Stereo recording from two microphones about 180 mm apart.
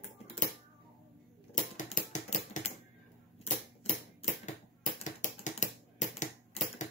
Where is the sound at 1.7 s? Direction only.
45° left (ahead or behind).